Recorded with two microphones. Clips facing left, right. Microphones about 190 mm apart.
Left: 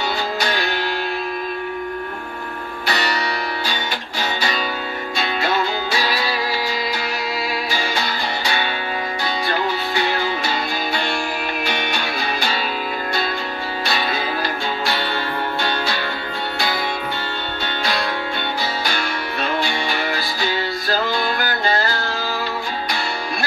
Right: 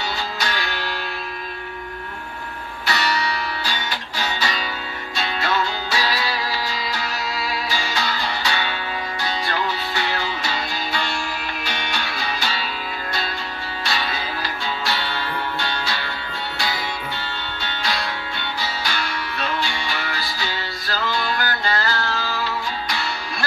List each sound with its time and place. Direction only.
0.4 s music: 55° left (ahead or behind)
2.9 s music: 50° left (ahead or behind)
10.0 s music: 50° left (ahead or behind)
13.8 s music: 50° left (ahead or behind)
18.6 s music: 55° left (ahead or behind)